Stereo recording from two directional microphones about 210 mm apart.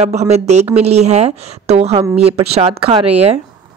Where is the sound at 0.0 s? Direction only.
30° right (ahead or behind).